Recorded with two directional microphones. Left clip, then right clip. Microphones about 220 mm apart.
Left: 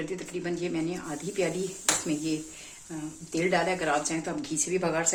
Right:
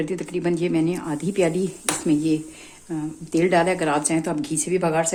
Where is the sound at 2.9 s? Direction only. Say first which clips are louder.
Right 9 dB; 40° right (ahead or behind).